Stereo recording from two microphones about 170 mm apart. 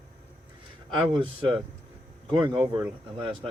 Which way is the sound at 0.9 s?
30° right (ahead or behind).